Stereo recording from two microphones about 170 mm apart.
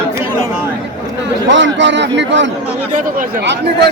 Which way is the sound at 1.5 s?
90° right.